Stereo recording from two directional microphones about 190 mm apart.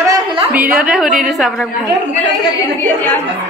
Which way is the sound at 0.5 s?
10° right (ahead or behind).